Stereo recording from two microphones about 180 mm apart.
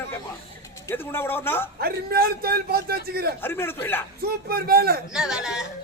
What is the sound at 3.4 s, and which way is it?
Speech, 10° left (ahead or behind).